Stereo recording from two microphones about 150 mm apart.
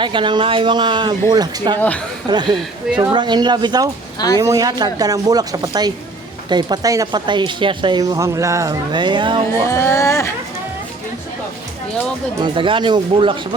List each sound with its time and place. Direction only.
0.0 s speech: 30° right (ahead or behind)
9.6 s speech: 20° left (ahead or behind)
12.4 s speech: 35° right (ahead or behind)